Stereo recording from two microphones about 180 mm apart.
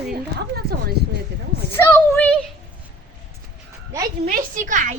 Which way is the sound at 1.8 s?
10° left (ahead or behind).